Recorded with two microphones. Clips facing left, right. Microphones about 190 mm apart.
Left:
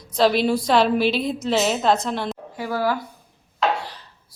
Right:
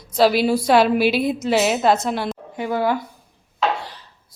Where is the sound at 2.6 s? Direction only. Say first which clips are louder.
Right 2 dB; 20° right (ahead or behind).